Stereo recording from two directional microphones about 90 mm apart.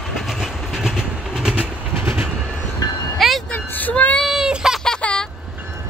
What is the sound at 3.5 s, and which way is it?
Child singing, 20° left (ahead or behind).